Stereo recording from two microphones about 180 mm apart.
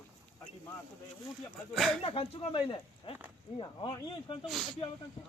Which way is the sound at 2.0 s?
35° left (ahead or behind).